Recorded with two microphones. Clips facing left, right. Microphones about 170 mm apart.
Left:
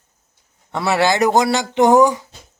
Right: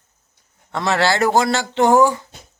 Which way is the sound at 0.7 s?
15° left (ahead or behind).